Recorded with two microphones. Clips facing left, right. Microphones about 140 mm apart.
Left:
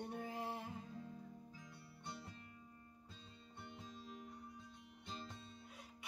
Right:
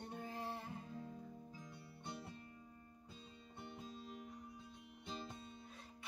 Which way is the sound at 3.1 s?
10° right (ahead or behind).